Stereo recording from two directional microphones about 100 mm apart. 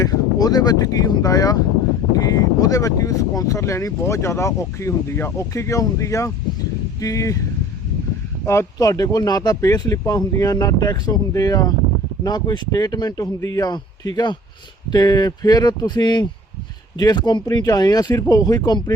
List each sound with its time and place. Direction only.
0.0 s speech: 40° left (ahead or behind)
8.4 s speech: 30° left (ahead or behind)